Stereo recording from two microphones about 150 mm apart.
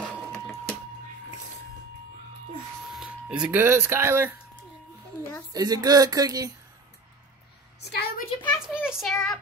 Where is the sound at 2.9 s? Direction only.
5° right (ahead or behind).